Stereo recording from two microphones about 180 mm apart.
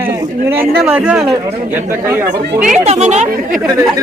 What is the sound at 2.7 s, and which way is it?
Speech, 40° right (ahead or behind).